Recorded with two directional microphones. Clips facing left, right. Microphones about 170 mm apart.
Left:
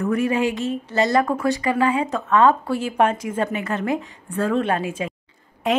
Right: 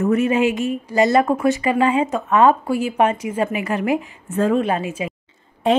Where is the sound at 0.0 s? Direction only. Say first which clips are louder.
Right 3 dB; 25° right (ahead or behind); by 5.1 s 5° right (ahead or behind).